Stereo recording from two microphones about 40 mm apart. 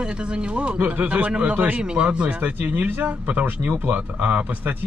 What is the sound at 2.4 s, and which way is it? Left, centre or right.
Speech, right.